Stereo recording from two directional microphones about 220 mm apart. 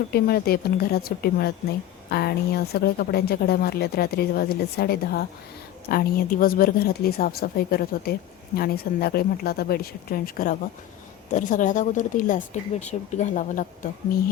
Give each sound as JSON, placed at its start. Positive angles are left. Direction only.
{"t": 0.1, "sound": "speech", "side_deg": 45}